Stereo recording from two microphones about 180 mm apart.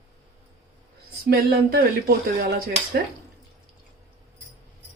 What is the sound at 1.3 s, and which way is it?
Speech, 55° right (ahead or behind).